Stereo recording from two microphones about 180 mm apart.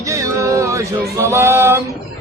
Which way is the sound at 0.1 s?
15° right (ahead or behind).